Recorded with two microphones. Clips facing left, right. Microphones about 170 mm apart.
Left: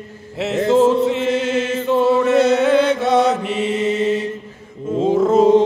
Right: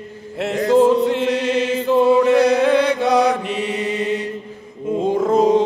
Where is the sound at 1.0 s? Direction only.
Centre (ahead or behind).